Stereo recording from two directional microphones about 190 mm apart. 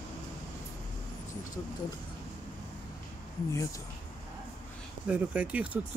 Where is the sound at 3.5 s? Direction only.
15° left (ahead or behind).